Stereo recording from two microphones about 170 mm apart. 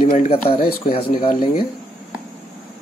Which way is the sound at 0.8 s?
40° left (ahead or behind).